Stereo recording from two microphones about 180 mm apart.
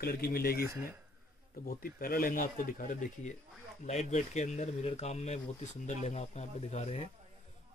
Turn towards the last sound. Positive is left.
turn(degrees=35)  # may be behind; listen again after turning